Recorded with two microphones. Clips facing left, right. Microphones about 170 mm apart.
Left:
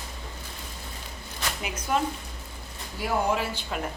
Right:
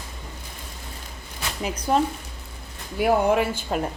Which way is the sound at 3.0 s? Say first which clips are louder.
Right 7 dB; 60° right (ahead or behind).